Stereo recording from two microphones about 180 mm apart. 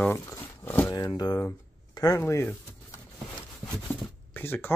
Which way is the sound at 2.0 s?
20° left (ahead or behind).